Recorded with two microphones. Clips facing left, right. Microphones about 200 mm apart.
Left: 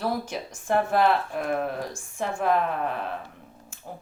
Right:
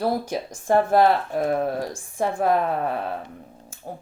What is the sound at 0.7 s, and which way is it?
Speech, 45° right (ahead or behind).